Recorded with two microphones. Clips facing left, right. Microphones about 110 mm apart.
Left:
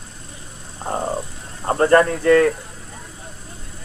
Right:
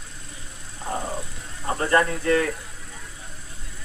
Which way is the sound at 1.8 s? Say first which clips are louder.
Left 7 dB; 55° left (ahead or behind).